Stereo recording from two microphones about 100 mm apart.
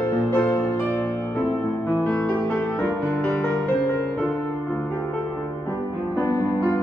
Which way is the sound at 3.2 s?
15° left (ahead or behind).